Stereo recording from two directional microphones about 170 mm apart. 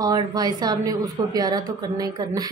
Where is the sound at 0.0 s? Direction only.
25° right (ahead or behind).